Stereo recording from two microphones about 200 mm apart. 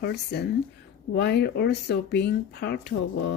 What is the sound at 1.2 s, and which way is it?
Speech, 55° left (ahead or behind).